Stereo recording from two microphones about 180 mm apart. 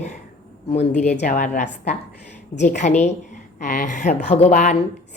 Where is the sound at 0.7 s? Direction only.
40° left (ahead or behind).